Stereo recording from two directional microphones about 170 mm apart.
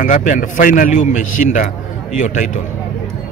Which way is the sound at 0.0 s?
50° left (ahead or behind).